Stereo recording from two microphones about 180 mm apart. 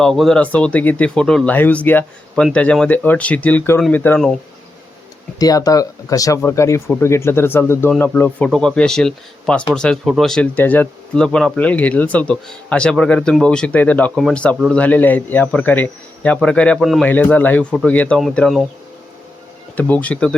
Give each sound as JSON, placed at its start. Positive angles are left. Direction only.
{"t": 0.0, "sound": "speech", "side_deg": 0}
{"t": 5.4, "sound": "speech", "side_deg": 20}
{"t": 19.7, "sound": "speech", "side_deg": 10}